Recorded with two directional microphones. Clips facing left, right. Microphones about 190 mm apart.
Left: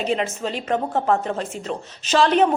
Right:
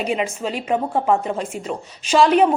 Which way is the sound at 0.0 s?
10° right (ahead or behind).